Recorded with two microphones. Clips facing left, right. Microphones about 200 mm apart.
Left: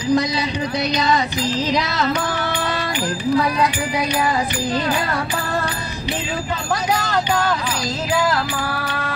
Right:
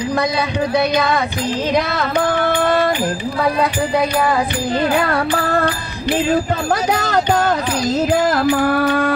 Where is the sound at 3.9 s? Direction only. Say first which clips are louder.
Right 4 dB; 55° right (ahead or behind).